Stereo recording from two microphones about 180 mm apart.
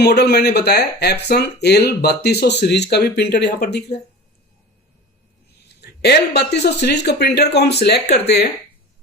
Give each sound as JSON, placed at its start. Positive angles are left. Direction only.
{"t": 0.0, "sound": "speech", "side_deg": 65}
{"t": 5.8, "sound": "speech", "side_deg": 65}